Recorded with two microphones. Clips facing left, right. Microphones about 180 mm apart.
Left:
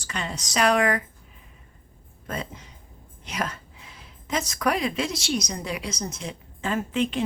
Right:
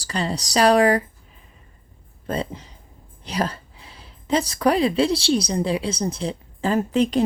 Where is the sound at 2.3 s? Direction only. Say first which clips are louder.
Right 7 dB; 30° right (ahead or behind).